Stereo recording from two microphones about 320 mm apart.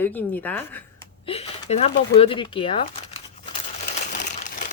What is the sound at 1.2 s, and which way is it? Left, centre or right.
A woman's voice, centre.